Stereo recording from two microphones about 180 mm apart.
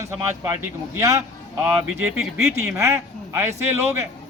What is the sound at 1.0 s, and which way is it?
Speech, 15° right (ahead or behind).